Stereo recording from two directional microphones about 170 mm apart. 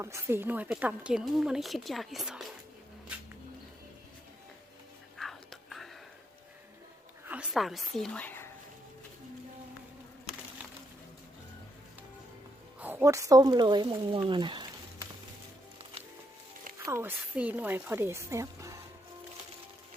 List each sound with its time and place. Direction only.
0.0 s speech: 15° right (ahead or behind)
5.1 s whispering: centre (ahead or behind)
7.3 s a woman's voice: 5° right (ahead or behind)
12.8 s speech: 15° right (ahead or behind)
16.8 s speech: 15° right (ahead or behind)